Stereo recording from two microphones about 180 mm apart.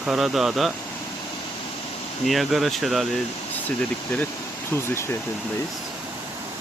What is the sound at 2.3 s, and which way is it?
Speech, centre (ahead or behind).